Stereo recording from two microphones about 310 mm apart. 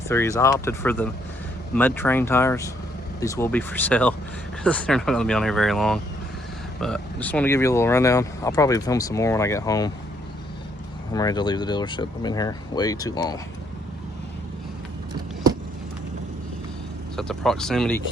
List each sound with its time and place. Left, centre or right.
0.1 s speech: centre
11.1 s speech: centre
17.2 s speech: centre